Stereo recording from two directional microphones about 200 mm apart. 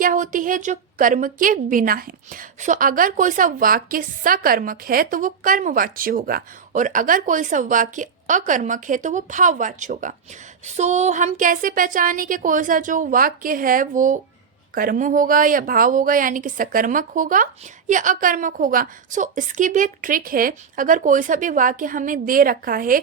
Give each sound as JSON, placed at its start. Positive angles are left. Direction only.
{"t": 0.0, "sound": "a woman's voice", "side_deg": -40}